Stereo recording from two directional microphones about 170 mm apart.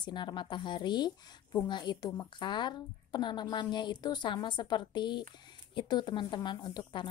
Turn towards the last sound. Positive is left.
turn(degrees=25)  # may be behind; listen again after turning